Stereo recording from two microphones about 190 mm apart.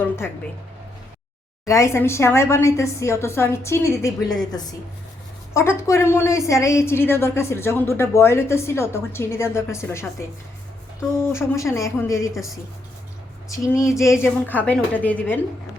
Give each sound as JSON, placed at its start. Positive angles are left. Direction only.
{"t": 1.6, "sound": "a woman's voice", "side_deg": 15}
{"t": 5.5, "sound": "a woman's voice", "side_deg": 15}
{"t": 12.3, "sound": "speech", "side_deg": 0}
{"t": 13.5, "sound": "a woman's voice", "side_deg": 15}